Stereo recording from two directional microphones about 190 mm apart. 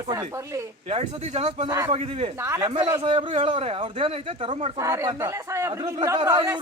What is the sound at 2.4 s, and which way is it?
A man's voice, 15° right (ahead or behind).